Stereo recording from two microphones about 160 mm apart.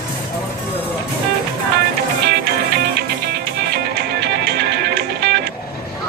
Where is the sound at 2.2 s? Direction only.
90° right.